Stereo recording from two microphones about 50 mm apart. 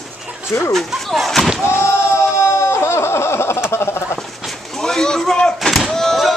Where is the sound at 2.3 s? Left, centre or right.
Left.